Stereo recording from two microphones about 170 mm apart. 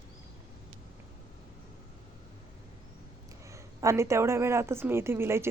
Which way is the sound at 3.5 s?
15° right (ahead or behind).